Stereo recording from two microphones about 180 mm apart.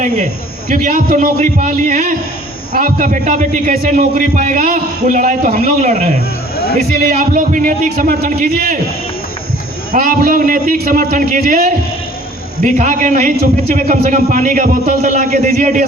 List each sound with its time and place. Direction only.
0.7 s a man's voice: 50° right (ahead or behind)
9.9 s a man's voice: 50° right (ahead or behind)